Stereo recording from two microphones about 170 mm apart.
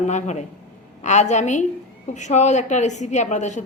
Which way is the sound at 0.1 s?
45° left (ahead or behind).